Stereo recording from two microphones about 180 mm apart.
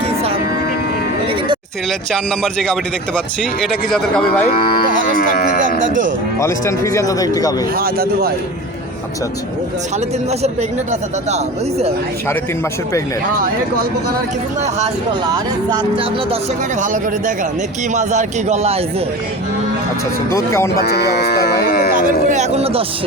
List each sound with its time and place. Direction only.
0.0 s vehicle: 35° right (ahead or behind)
1.9 s speech: centre (ahead or behind)
5.1 s speech: 55° left (ahead or behind)
6.4 s speech: 15° left (ahead or behind)
7.8 s speech: 55° right (ahead or behind)
15.3 s speech: 25° right (ahead or behind)
16.8 s a man's voice: 45° right (ahead or behind)
20.3 s speech: 15° left (ahead or behind)
20.7 s speech: 60° left (ahead or behind)
22.3 s a man's voice: 40° right (ahead or behind)